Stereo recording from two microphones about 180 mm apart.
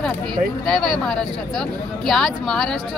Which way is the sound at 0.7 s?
Centre (ahead or behind).